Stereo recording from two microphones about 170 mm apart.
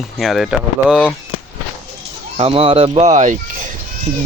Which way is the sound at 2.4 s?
35° right (ahead or behind).